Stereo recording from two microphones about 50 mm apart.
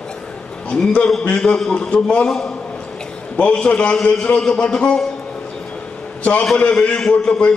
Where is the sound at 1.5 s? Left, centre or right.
Centre.